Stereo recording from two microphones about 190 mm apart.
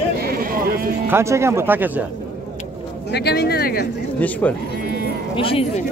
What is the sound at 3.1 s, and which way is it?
Speech, 60° left (ahead or behind).